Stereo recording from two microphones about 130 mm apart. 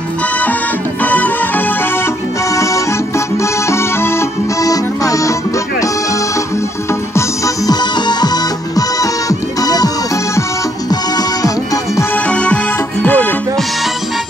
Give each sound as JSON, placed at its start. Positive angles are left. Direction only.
{"t": 1.0, "sound": "music", "side_deg": 10}
{"t": 2.5, "sound": "music", "side_deg": 25}
{"t": 3.6, "sound": "accordion", "side_deg": 20}
{"t": 6.9, "sound": "music", "side_deg": 25}
{"t": 10.9, "sound": "music", "side_deg": 30}
{"t": 12.3, "sound": "music", "side_deg": 10}